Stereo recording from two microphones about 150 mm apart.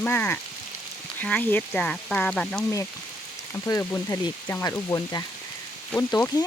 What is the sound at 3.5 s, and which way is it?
Speech, 15° left (ahead or behind).